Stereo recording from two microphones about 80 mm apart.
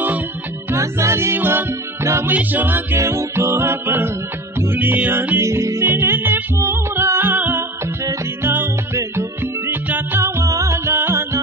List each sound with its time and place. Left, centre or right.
0.7 s music: right
2.2 s music: right
3.0 s music: right
7.8 s music: right
10.2 s music: right